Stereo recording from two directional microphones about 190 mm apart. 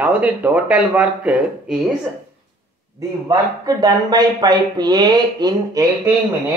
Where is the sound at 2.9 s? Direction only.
20° right (ahead or behind).